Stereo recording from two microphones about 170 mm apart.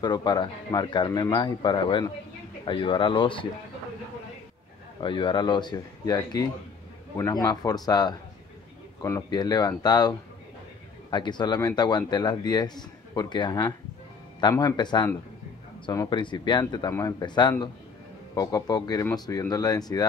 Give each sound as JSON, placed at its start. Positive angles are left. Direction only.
{"t": 0.0, "sound": "speech", "side_deg": 25}
{"t": 5.0, "sound": "speech", "side_deg": 30}